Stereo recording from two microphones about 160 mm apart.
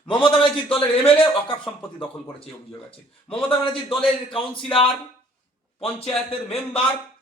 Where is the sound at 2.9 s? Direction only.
35° left (ahead or behind).